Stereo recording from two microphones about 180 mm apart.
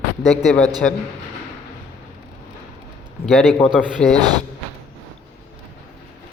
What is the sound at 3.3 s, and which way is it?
Mantra, 5° left (ahead or behind).